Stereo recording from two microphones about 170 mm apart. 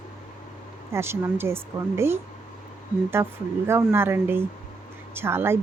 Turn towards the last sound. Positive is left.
turn(degrees=-15)  # may be behind; listen again after turning